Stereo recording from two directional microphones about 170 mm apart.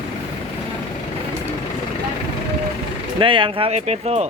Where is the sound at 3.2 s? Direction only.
30° right (ahead or behind).